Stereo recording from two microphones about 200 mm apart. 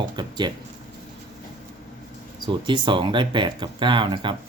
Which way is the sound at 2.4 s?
25° right (ahead or behind).